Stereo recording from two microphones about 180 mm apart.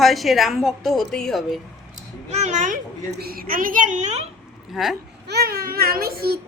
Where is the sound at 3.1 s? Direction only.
55° right (ahead or behind); by 4.2 s 40° right (ahead or behind).